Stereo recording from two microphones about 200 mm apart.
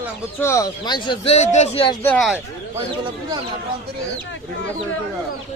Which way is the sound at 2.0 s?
5° left (ahead or behind).